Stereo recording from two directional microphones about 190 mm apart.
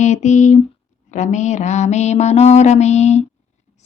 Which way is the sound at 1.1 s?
40° left (ahead or behind).